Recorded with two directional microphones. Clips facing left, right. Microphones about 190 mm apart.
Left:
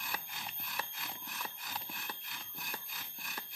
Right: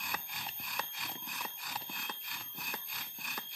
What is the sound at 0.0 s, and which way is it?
Alarm clock, centre (ahead or behind).